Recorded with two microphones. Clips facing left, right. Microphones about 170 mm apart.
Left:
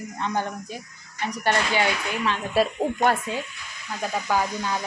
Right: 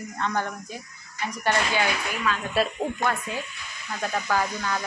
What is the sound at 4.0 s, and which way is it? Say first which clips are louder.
Speech: left 1 dB; 10° left (ahead or behind).